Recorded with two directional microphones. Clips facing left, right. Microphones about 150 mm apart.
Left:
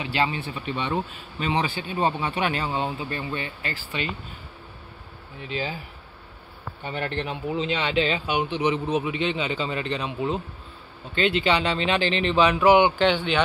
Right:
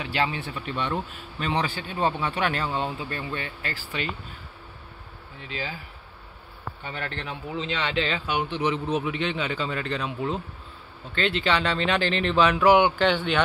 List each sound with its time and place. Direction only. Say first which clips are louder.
0.0 s speech: left 2 dB; 5° left (ahead or behind)
3.6 s speech: left 1 dB; 40° right (ahead or behind)
5.5 s speech: left 4 dB; 20° left (ahead or behind)
6.8 s speech: left 6 dB; 20° left (ahead or behind); by 12.9 s centre (ahead or behind)